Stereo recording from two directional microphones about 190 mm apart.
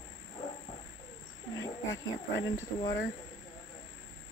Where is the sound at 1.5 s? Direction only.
15° left (ahead or behind).